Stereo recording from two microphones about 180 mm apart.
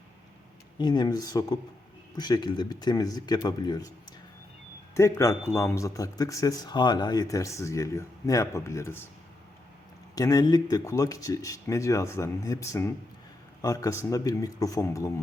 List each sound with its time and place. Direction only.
0.8 s speech: 25° left (ahead or behind)
4.9 s speech: 15° left (ahead or behind)
10.2 s speech: 20° left (ahead or behind)